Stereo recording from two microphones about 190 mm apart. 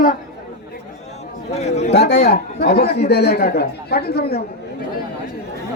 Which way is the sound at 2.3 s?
55° left (ahead or behind).